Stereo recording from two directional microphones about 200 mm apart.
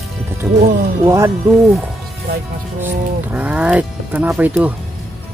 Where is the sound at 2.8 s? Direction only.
10° right (ahead or behind).